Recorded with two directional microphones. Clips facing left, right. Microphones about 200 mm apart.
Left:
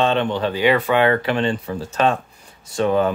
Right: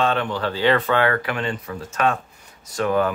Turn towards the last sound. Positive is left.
turn(degrees=25)  # may be behind; listen again after turning